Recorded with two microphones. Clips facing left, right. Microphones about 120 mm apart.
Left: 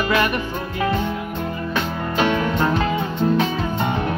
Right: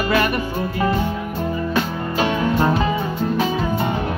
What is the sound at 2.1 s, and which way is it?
Music, 40° right (ahead or behind).